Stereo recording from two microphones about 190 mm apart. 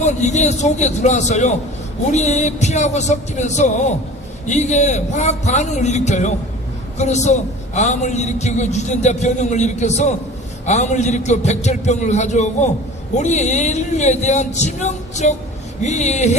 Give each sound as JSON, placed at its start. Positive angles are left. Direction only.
{"t": 0.0, "sound": "a man's voice", "side_deg": 35}